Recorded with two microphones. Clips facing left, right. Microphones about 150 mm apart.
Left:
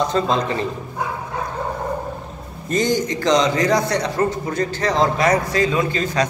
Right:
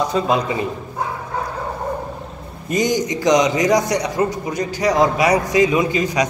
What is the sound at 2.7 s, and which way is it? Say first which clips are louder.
A man's voice: right 1 dB; 15° right (ahead or behind).